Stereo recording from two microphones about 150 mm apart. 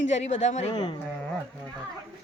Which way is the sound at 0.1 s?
50° left (ahead or behind).